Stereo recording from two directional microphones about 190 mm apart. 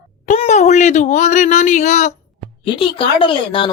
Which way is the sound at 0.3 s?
40° left (ahead or behind).